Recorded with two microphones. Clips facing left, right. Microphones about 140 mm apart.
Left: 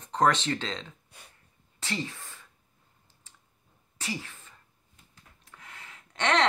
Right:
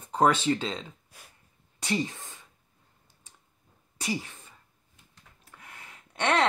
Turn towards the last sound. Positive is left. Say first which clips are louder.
# even
turn(degrees=-10)  # may be behind; listen again after turning